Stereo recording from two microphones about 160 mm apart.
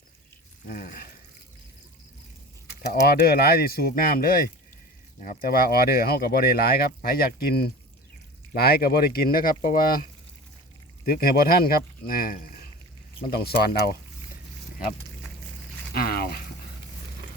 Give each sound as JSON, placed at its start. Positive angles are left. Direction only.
{"t": 0.7, "sound": "speech", "side_deg": 65}
{"t": 2.8, "sound": "speech", "side_deg": 85}
{"t": 13.3, "sound": "speech", "side_deg": 80}
{"t": 15.9, "sound": "a sound", "side_deg": 75}